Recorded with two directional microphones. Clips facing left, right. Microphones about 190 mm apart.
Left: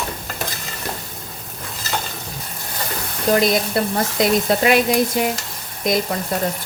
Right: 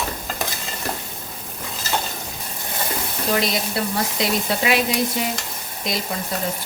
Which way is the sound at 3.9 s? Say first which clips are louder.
Left 6 dB; 50° left (ahead or behind).